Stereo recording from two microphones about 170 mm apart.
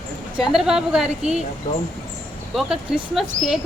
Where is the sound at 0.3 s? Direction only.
5° right (ahead or behind).